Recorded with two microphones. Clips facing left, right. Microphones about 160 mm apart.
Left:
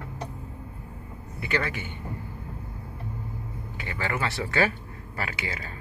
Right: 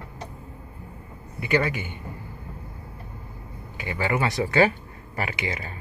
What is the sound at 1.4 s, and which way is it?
Speech, 15° right (ahead or behind).